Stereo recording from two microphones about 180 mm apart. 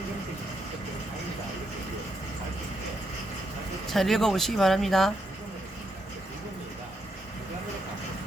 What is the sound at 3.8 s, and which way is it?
Speech, centre (ahead or behind).